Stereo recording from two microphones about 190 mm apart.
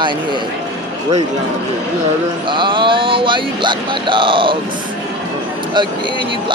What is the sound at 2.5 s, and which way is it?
Speech, 25° right (ahead or behind).